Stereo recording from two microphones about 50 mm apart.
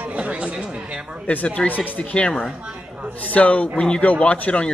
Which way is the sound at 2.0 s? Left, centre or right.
Left.